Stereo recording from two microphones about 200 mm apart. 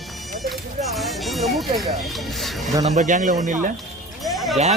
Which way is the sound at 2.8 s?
40° right (ahead or behind).